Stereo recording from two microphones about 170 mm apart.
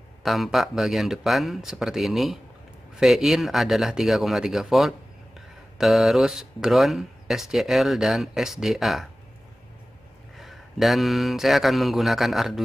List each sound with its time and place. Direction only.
0.2 s speech: centre (ahead or behind)
10.3 s speech: centre (ahead or behind)